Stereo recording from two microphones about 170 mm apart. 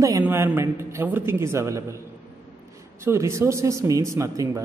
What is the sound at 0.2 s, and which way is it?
A man's voice, 15° right (ahead or behind).